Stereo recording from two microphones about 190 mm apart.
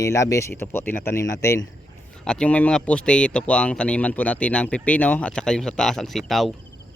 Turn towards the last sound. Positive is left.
turn(degrees=0)  # may be behind; listen again after turning